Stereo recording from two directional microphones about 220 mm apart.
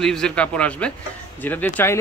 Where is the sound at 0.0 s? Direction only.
5° left (ahead or behind).